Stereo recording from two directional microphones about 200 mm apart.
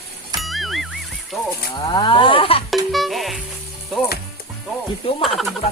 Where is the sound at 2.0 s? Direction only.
25° left (ahead or behind).